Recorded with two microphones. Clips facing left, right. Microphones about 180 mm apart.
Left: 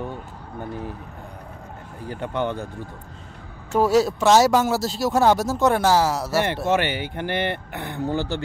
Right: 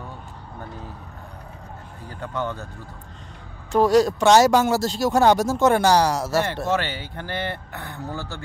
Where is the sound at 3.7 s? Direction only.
5° left (ahead or behind).